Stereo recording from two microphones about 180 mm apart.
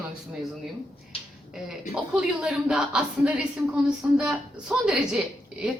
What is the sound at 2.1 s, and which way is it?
A woman's voice, 5° right (ahead or behind).